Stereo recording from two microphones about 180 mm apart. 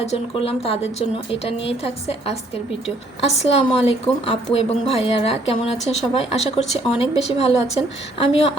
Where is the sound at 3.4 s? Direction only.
35° left (ahead or behind).